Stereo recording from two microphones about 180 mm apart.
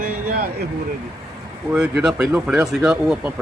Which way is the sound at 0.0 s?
50° right (ahead or behind).